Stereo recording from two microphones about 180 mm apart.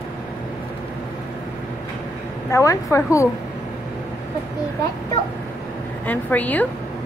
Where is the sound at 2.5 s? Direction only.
15° left (ahead or behind).